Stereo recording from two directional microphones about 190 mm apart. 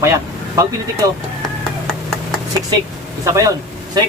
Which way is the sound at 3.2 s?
15° right (ahead or behind).